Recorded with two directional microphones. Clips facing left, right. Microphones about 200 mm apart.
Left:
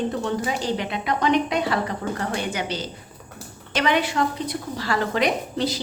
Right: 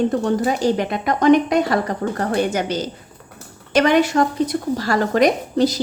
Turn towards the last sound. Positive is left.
turn(degrees=-45)  # may be behind; listen again after turning